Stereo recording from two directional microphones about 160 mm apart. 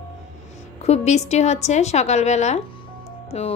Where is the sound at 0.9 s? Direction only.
45° left (ahead or behind).